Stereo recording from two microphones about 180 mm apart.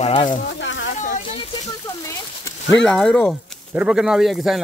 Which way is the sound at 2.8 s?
5° left (ahead or behind).